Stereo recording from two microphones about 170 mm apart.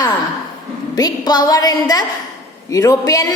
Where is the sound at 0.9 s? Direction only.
25° left (ahead or behind).